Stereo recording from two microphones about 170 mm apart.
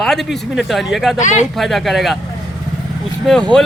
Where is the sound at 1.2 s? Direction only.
45° left (ahead or behind).